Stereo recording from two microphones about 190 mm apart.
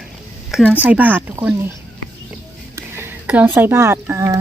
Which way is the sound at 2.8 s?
15° right (ahead or behind).